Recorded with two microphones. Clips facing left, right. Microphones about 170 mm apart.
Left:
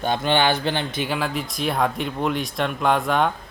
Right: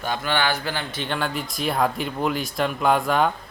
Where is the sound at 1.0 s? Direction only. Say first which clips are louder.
Left 2 dB; 5° left (ahead or behind).